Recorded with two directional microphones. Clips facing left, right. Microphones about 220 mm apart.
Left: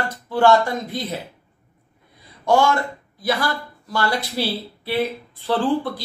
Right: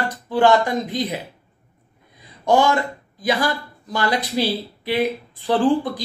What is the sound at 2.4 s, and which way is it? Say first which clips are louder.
Speech: right 1 dB; 15° right (ahead or behind).